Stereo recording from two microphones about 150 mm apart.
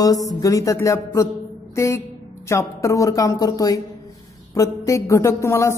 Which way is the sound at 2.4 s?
20° left (ahead or behind).